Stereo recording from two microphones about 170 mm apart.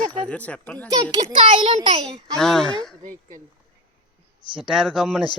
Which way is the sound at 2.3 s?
5° left (ahead or behind).